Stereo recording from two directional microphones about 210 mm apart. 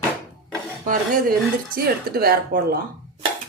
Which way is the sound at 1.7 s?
45° right (ahead or behind).